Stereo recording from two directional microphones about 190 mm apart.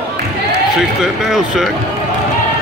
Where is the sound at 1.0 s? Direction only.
Centre (ahead or behind).